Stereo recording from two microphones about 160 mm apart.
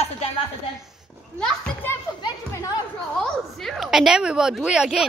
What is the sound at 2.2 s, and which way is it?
Chatter, 20° left (ahead or behind).